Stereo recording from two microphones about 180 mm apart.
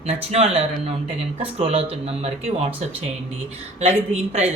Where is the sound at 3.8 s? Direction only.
35° right (ahead or behind).